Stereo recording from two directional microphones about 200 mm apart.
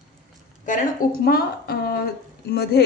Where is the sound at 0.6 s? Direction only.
45° left (ahead or behind).